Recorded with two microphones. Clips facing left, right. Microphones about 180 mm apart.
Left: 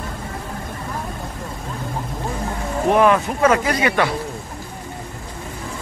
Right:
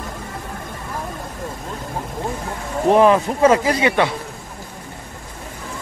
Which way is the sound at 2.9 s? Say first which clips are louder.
Right 2 dB; 30° right (ahead or behind).